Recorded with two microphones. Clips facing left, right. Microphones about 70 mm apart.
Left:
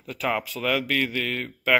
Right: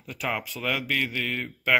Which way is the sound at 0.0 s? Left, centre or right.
Centre.